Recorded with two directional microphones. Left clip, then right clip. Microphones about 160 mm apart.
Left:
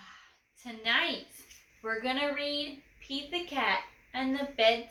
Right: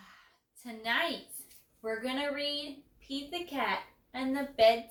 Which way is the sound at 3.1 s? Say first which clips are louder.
Left 3 dB; 10° right (ahead or behind).